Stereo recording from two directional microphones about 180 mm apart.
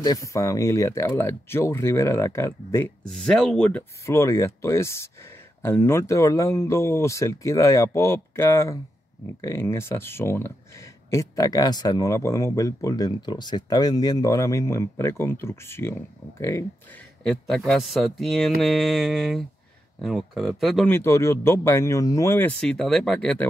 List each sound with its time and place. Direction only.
0.0 s speech: 20° left (ahead or behind)
3.1 s speech: 5° left (ahead or behind)
4.0 s speech: 15° left (ahead or behind)
17.3 s speech: centre (ahead or behind)
20.9 s speech: 15° left (ahead or behind)